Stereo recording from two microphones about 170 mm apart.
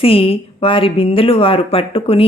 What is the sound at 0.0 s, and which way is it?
Speech, 35° left (ahead or behind).